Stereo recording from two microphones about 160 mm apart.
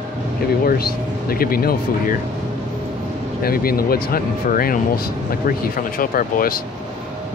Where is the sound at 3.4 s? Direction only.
70° left (ahead or behind).